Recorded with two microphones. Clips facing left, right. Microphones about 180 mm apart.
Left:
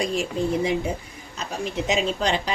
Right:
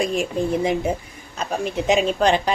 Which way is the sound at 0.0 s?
55° right (ahead or behind).